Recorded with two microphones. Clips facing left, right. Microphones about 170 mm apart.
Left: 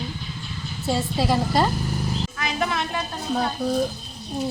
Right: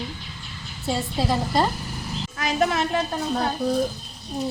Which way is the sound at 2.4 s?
40° right (ahead or behind).